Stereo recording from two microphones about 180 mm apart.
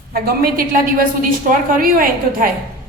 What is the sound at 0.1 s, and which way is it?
A woman's voice, 55° right (ahead or behind).